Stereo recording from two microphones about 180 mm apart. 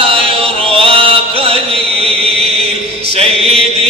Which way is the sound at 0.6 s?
30° right (ahead or behind).